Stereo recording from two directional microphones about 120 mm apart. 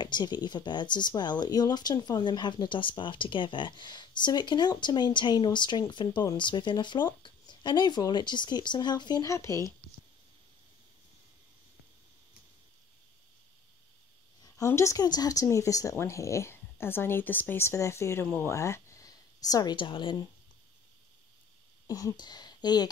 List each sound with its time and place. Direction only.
0.0 s speech: 35° left (ahead or behind)
14.7 s a woman's voice: 25° left (ahead or behind); by 20.2 s 45° left (ahead or behind)
21.8 s speech: 30° left (ahead or behind)